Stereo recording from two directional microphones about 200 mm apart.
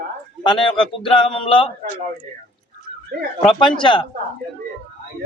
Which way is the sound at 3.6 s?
25° left (ahead or behind).